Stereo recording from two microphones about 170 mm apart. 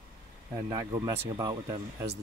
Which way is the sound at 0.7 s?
20° right (ahead or behind).